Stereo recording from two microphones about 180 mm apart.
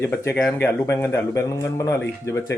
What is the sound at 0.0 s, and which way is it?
Speech, 15° left (ahead or behind).